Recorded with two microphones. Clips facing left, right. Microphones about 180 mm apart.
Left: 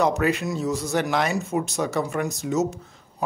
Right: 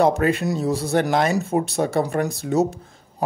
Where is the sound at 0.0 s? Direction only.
30° right (ahead or behind).